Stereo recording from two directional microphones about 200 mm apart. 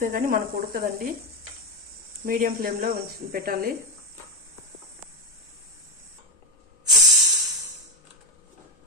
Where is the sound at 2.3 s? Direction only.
45° right (ahead or behind).